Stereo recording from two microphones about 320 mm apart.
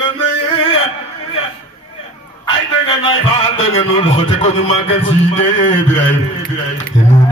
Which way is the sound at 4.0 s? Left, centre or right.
Centre.